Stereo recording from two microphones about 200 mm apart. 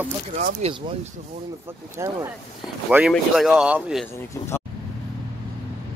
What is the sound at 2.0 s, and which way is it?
Speech, 15° right (ahead or behind).